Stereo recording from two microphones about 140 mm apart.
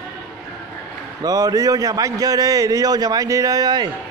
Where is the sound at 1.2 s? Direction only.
25° right (ahead or behind).